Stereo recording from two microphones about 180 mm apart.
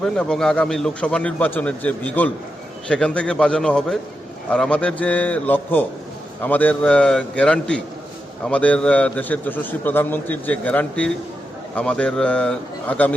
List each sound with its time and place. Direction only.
0.0 s a man's voice: 5° left (ahead or behind)